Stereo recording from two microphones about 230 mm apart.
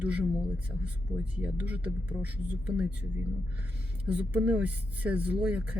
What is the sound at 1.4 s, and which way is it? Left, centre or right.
Speech, centre.